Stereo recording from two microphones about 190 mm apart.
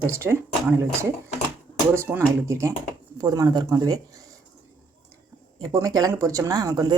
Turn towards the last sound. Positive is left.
turn(degrees=-20)  # may be behind; listen again after turning